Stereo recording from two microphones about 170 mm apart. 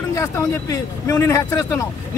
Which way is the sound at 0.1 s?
15° left (ahead or behind).